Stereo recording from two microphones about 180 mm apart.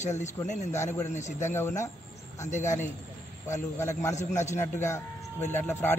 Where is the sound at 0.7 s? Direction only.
15° left (ahead or behind).